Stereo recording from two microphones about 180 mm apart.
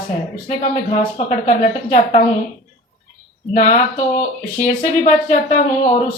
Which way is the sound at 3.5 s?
45° left (ahead or behind).